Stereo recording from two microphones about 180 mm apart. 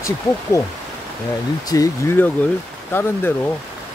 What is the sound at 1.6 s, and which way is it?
Speech, 20° left (ahead or behind).